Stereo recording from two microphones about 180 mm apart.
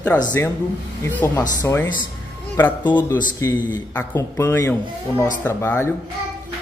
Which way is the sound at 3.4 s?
15° left (ahead or behind).